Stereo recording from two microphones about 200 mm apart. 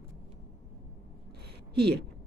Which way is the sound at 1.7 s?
55° right (ahead or behind).